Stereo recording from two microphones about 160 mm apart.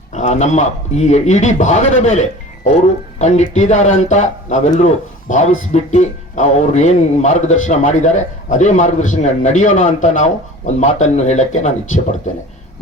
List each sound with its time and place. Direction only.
0.1 s speech: 45° left (ahead or behind)